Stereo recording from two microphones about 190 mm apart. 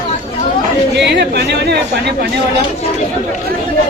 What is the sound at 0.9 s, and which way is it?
Chatter, 65° right (ahead or behind).